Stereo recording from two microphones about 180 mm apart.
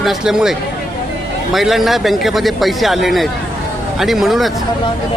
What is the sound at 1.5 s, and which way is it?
Speech, centre (ahead or behind).